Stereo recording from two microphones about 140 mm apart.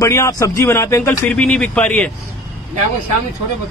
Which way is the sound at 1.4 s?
5° left (ahead or behind).